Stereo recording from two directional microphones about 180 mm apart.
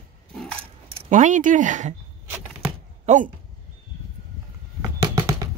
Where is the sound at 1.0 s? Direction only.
45° right (ahead or behind).